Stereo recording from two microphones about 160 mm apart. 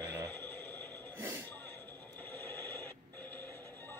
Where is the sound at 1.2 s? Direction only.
15° right (ahead or behind).